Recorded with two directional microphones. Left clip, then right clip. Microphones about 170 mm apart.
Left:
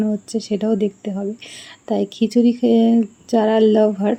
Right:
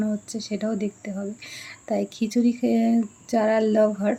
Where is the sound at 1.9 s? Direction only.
20° left (ahead or behind).